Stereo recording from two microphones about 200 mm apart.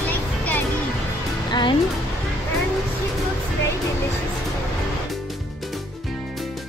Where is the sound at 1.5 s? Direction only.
25° left (ahead or behind).